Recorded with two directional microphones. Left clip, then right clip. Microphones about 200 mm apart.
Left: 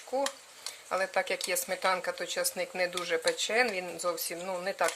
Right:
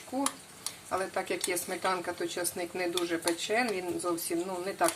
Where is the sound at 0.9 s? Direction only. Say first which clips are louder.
Left 3 dB; 50° left (ahead or behind).